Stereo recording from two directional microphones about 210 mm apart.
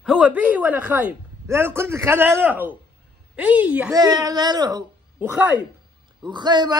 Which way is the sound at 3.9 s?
15° right (ahead or behind).